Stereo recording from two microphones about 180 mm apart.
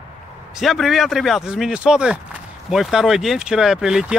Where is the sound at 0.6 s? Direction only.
Centre (ahead or behind).